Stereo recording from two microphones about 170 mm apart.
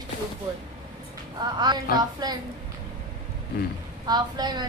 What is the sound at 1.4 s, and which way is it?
Speech, 25° right (ahead or behind).